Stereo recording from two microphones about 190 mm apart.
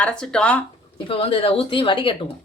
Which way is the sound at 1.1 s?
30° left (ahead or behind).